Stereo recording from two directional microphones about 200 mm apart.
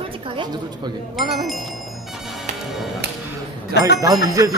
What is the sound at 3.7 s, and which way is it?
Speech, 60° left (ahead or behind).